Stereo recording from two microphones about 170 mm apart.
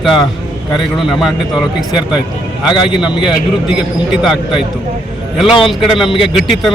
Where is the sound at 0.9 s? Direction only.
Centre (ahead or behind).